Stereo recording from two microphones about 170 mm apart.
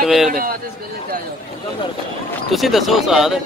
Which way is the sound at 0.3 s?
55° right (ahead or behind).